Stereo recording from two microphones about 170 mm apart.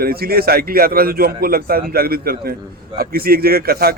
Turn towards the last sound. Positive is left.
turn(degrees=-65)  # may be behind; listen again after turning